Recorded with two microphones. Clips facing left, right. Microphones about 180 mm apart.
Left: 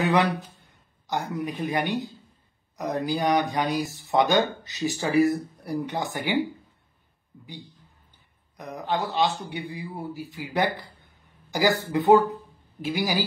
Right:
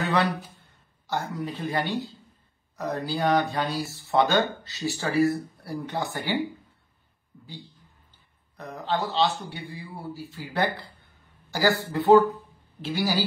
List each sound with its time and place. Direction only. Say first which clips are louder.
0.0 s a sound: left 3 dB; 15° left (ahead or behind)
1.0 s speech: left 1 dB; 15° left (ahead or behind)
8.5 s speech: even; 15° left (ahead or behind)